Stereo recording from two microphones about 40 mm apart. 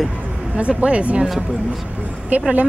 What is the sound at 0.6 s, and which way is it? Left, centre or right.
Speech, right.